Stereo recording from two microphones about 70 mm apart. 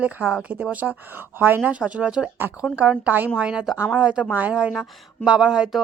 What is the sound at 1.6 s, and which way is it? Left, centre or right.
A woman's voice, centre.